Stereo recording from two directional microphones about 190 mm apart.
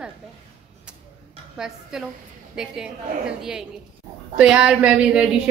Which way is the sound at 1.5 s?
5° right (ahead or behind).